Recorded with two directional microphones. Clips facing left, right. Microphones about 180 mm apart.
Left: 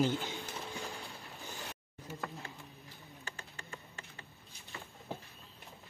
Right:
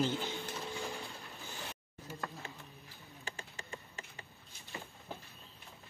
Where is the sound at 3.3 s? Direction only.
20° right (ahead or behind).